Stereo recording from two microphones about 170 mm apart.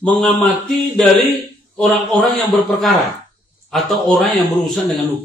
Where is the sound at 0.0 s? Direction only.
5° left (ahead or behind).